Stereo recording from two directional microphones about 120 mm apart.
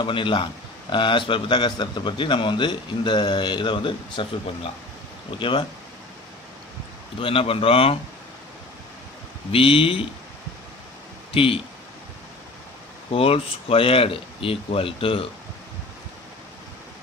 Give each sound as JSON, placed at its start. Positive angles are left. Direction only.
{"t": 0.0, "sound": "a man's voice", "side_deg": 45}
{"t": 5.4, "sound": "a man's voice", "side_deg": 45}
{"t": 7.2, "sound": "a man's voice", "side_deg": 50}
{"t": 9.5, "sound": "a man's voice", "side_deg": 50}
{"t": 11.3, "sound": "a man's voice", "side_deg": 50}
{"t": 13.1, "sound": "a man's voice", "side_deg": 50}